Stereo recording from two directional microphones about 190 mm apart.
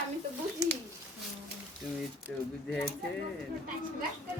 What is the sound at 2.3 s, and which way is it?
Speech, 5° left (ahead or behind).